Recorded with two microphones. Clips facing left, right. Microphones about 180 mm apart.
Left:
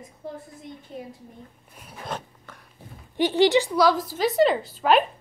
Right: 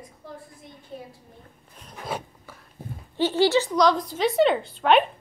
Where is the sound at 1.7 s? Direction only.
10° left (ahead or behind).